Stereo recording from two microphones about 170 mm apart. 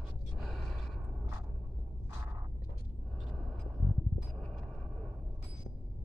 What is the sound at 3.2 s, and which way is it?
Vehicle, centre (ahead or behind).